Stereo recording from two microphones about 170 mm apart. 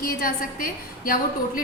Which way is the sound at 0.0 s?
55° left (ahead or behind).